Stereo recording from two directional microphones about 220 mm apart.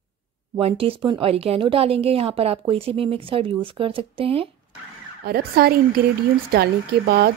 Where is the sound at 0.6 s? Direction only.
25° right (ahead or behind).